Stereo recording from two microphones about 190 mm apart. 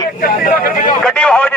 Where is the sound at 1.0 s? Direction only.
5° left (ahead or behind).